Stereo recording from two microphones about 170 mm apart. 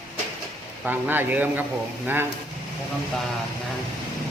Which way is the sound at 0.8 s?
10° right (ahead or behind).